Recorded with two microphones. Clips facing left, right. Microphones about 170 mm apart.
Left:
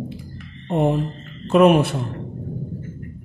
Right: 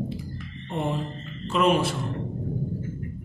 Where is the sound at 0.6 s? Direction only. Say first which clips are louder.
Left 9 dB; 55° left (ahead or behind).